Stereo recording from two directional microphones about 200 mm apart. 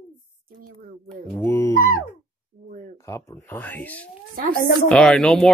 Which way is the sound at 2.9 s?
15° left (ahead or behind).